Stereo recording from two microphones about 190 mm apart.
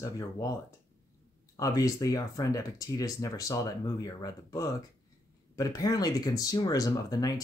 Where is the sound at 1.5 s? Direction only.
20° left (ahead or behind).